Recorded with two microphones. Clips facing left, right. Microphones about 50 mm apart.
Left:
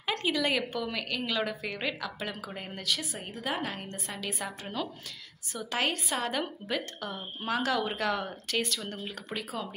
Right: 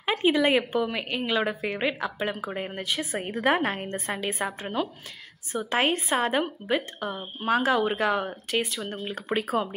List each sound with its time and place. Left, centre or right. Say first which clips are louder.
0.1 s a woman's voice: right 7 dB; right
3.2 s a woman's voice: right 10 dB; right
9.4 s a woman's voice: right 10 dB; right